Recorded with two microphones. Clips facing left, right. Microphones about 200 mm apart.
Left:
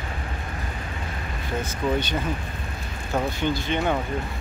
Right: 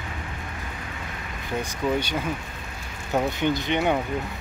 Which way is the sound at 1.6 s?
10° right (ahead or behind).